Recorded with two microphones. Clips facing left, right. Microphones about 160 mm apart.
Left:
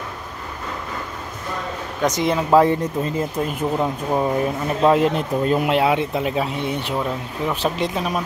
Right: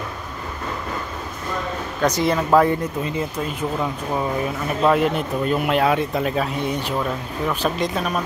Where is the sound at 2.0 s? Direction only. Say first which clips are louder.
Even; 20° left (ahead or behind).